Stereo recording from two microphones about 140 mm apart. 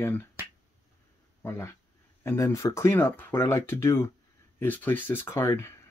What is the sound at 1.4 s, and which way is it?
Speech, 20° left (ahead or behind).